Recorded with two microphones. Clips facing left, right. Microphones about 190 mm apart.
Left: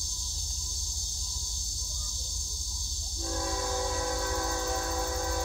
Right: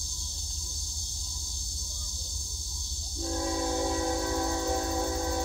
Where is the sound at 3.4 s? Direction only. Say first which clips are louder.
Right 3 dB; 25° right (ahead or behind).